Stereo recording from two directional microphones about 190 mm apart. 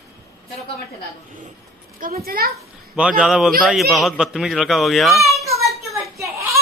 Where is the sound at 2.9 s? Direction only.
5° right (ahead or behind).